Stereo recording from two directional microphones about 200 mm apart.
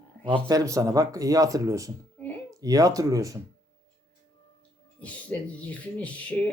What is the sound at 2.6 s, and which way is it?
Speech, 15° right (ahead or behind).